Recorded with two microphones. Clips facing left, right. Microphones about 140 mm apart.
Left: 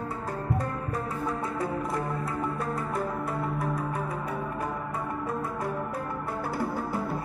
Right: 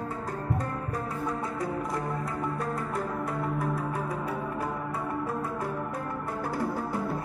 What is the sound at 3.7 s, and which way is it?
Music, 10° right (ahead or behind).